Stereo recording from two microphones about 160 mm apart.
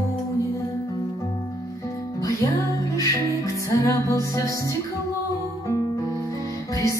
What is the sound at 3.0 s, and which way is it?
Music, 20° left (ahead or behind).